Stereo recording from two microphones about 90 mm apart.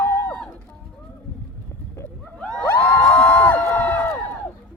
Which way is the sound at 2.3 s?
10° left (ahead or behind).